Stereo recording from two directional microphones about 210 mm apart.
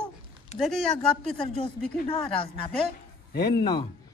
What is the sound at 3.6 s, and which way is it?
Speech, 20° left (ahead or behind).